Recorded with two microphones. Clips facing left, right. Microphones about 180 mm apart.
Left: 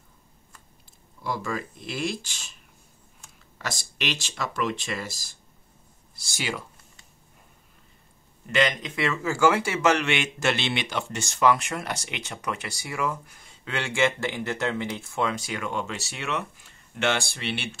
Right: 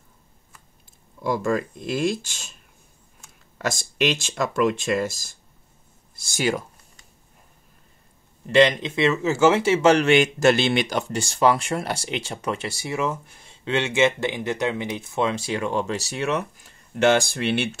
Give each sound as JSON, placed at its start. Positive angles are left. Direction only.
{"t": 1.2, "sound": "speech", "side_deg": -50}
{"t": 3.5, "sound": "speech", "side_deg": -50}
{"t": 8.5, "sound": "speech", "side_deg": -30}